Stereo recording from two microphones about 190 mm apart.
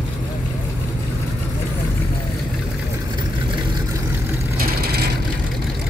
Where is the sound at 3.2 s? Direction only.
20° right (ahead or behind).